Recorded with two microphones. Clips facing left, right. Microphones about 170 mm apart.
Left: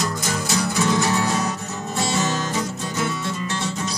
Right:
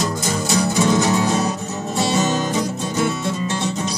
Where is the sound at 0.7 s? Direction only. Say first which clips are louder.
Right 3 dB; 20° right (ahead or behind).